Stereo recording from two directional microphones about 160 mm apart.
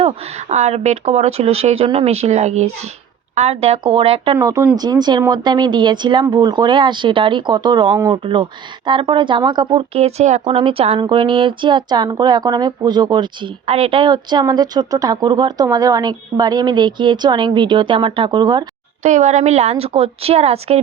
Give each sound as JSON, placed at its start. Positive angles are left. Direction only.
{"t": 0.0, "sound": "speech", "side_deg": -40}
{"t": 4.4, "sound": "a woman's voice", "side_deg": -20}
{"t": 8.2, "sound": "speech", "side_deg": -30}
{"t": 10.4, "sound": "a woman's voice", "side_deg": -35}
{"t": 13.7, "sound": "a woman's voice", "side_deg": -40}
{"t": 19.0, "sound": "speech", "side_deg": -50}